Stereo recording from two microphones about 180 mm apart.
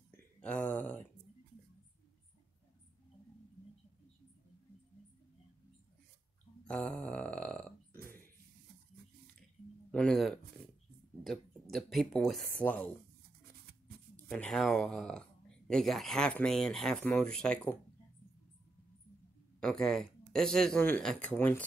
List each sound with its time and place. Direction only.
0.4 s a sound: 5° left (ahead or behind)
6.6 s burping: 5° left (ahead or behind)
9.8 s music: 5° left (ahead or behind)
11.7 s speech: centre (ahead or behind)
14.3 s speech: 5° left (ahead or behind)
19.6 s speech: 5° left (ahead or behind)